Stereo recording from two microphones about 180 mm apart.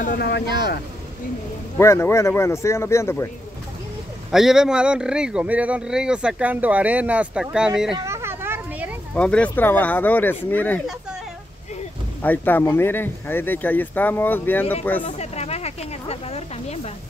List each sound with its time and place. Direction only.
0.2 s speech: 65° left (ahead or behind)
1.8 s speech: 15° left (ahead or behind)
4.3 s speech: centre (ahead or behind)
8.0 s a sound: 15° right (ahead or behind)
9.1 s speech: 5° left (ahead or behind)
12.2 s speech: 10° left (ahead or behind)
15.0 s a sound: 35° left (ahead or behind)